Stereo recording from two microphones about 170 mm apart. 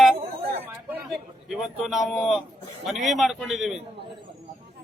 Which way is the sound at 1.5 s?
Centre (ahead or behind).